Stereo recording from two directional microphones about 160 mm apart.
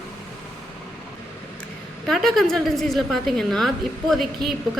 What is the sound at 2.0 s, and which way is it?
A woman's voice, centre (ahead or behind).